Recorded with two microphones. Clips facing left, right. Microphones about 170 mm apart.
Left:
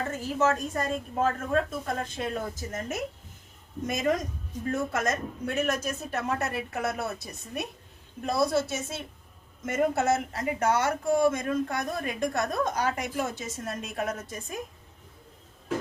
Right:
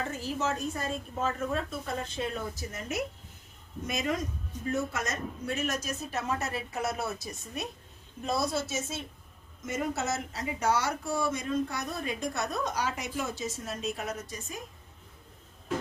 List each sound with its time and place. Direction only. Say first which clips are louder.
0.2 s a woman's voice: left 8 dB; 55° left (ahead or behind)